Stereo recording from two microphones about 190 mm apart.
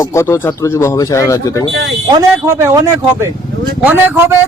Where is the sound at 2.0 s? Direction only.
20° right (ahead or behind).